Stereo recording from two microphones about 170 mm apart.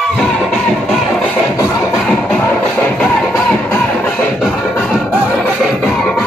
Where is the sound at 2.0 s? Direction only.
5° left (ahead or behind).